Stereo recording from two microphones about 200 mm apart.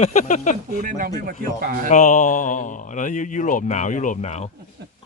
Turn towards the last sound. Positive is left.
turn(degrees=35)  # may be behind; listen again after turning